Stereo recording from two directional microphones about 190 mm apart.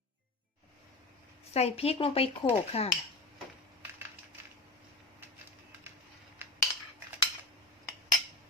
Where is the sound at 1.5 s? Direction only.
30° left (ahead or behind).